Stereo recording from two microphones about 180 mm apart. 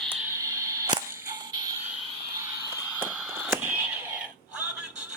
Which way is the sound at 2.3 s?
15° right (ahead or behind).